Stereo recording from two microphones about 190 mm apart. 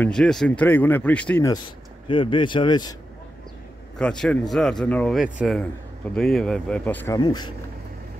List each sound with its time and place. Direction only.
0.0 s speech: 5° left (ahead or behind)
2.0 s a man's voice: 25° left (ahead or behind)
4.0 s speech: 5° left (ahead or behind)
7.2 s a man's voice: 20° left (ahead or behind)